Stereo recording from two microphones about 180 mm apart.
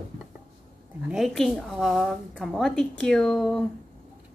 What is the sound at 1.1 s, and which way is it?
A woman's voice, centre (ahead or behind).